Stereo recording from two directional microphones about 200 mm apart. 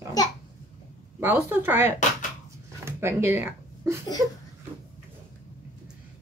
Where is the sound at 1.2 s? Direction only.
10° right (ahead or behind).